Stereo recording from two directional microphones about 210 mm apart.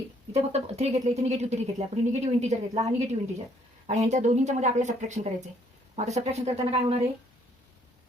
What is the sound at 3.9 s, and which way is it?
Speech, 35° right (ahead or behind).